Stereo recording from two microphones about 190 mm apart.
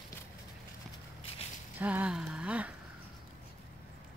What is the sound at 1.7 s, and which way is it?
Speech, 10° right (ahead or behind).